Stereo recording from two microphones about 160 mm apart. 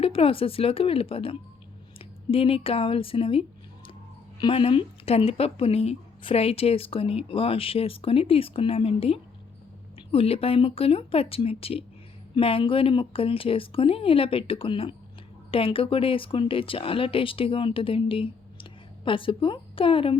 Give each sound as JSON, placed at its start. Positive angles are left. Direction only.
{"t": 0.0, "sound": "speech", "side_deg": 35}